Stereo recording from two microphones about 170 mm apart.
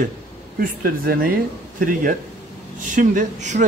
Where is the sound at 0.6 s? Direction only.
60° right (ahead or behind).